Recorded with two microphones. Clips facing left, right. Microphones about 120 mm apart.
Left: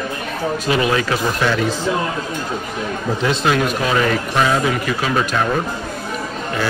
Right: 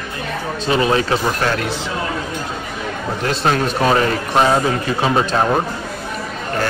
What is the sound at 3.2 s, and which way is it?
Speech, 40° right (ahead or behind).